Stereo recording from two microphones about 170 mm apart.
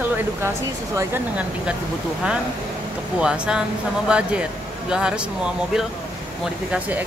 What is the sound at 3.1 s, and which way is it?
Speech, 5° right (ahead or behind).